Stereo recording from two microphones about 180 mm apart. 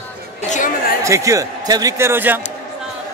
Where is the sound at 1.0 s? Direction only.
15° right (ahead or behind).